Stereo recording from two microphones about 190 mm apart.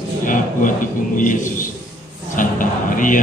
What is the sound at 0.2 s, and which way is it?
A man's voice, 45° left (ahead or behind).